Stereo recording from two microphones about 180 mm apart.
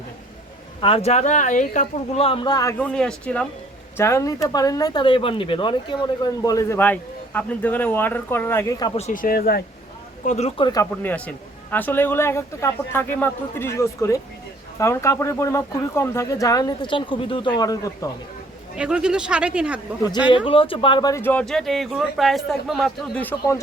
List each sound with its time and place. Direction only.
0.8 s speech: 30° left (ahead or behind)
2.7 s speech: 5° left (ahead or behind)
9.0 s speech: 45° left (ahead or behind)
10.2 s speech: 40° left (ahead or behind)
10.6 s speech: 20° left (ahead or behind)
11.0 s speech: 10° left (ahead or behind)
18.8 s speech: 5° right (ahead or behind)
20.3 s speech: 30° left (ahead or behind); by 23.2 s centre (ahead or behind)